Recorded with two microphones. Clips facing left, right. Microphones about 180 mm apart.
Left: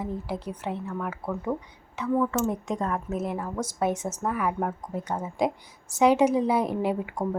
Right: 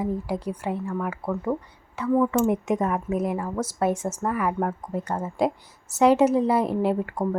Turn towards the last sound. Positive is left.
turn(degrees=0)  # may be behind; listen again after turning